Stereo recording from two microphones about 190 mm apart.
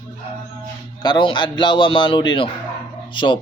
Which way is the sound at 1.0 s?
25° left (ahead or behind).